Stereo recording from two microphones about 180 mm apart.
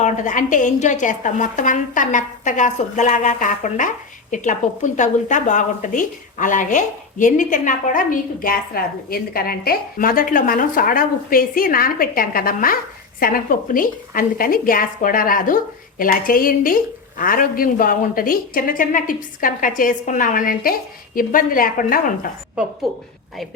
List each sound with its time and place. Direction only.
0.0 s a woman's voice: 45° left (ahead or behind)